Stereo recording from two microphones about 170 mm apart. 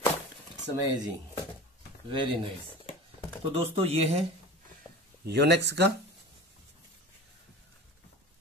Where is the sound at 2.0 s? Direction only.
30° right (ahead or behind).